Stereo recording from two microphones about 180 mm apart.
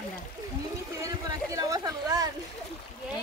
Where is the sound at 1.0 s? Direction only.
20° right (ahead or behind).